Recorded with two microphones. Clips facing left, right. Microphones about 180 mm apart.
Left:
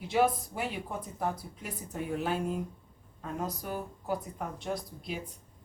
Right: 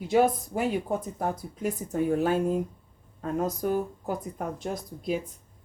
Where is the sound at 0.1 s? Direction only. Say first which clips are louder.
Right 5 dB; 45° right (ahead or behind).